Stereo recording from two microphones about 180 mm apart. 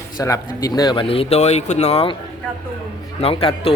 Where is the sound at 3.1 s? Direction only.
30° left (ahead or behind).